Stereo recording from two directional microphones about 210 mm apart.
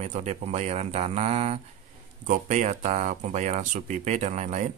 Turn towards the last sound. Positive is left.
turn(degrees=-35)  # may be behind; listen again after turning